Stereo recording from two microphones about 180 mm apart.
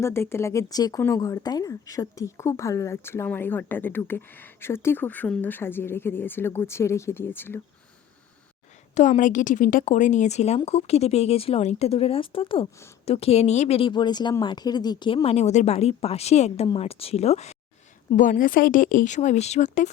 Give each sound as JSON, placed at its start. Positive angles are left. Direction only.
{"t": 0.0, "sound": "speech", "side_deg": 15}
{"t": 9.0, "sound": "a woman's voice", "side_deg": 45}